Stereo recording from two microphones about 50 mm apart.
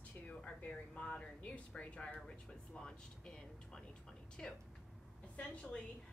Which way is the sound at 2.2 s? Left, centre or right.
Centre.